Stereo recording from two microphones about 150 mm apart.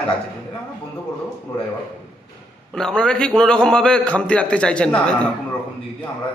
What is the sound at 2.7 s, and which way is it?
A man's voice, 5° left (ahead or behind).